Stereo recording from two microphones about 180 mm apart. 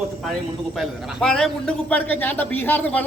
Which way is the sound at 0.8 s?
Centre (ahead or behind).